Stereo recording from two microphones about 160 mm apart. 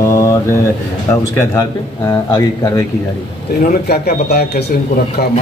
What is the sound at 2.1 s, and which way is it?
Speech, 25° left (ahead or behind).